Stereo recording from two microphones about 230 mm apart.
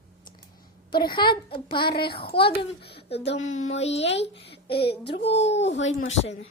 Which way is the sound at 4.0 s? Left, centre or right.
Left.